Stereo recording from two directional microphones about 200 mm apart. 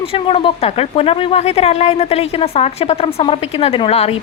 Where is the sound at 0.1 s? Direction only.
25° left (ahead or behind).